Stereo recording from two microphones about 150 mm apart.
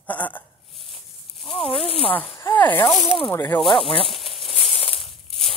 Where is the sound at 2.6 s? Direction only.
10° left (ahead or behind).